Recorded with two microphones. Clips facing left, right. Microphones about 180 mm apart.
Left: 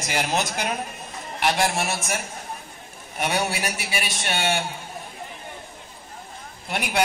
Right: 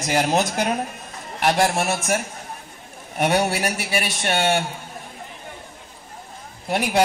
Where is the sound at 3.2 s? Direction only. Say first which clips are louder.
Right 5 dB; 55° right (ahead or behind).